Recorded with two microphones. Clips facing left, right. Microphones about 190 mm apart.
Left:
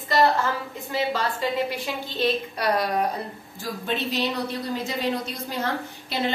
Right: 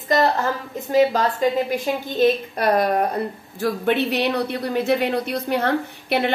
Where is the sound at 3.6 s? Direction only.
65° right (ahead or behind).